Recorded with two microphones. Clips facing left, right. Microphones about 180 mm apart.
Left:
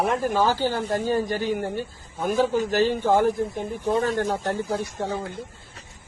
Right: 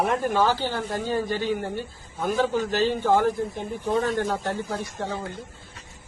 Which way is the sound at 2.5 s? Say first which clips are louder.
Left 2 dB; 40° left (ahead or behind).